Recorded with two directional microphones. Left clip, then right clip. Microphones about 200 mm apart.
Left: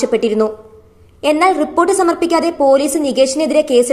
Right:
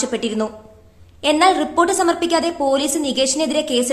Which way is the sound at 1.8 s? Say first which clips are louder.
Left 3 dB; 5° left (ahead or behind).